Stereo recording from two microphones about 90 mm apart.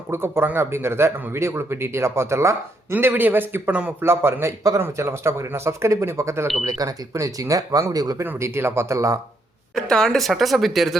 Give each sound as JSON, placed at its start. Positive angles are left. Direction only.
{"t": 0.1, "sound": "a man's voice", "side_deg": -25}
{"t": 4.0, "sound": "a man's voice", "side_deg": -25}
{"t": 8.2, "sound": "a man's voice", "side_deg": -25}
{"t": 9.7, "sound": "a woman's voice", "side_deg": 5}